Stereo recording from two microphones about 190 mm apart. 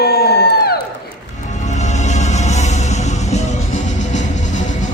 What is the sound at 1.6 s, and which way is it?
Music, 40° left (ahead or behind).